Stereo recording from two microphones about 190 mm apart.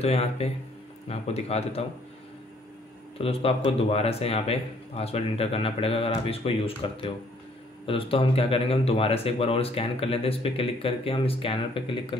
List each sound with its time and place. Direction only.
0.0 s speech: 35° left (ahead or behind)
3.2 s speech: 30° left (ahead or behind)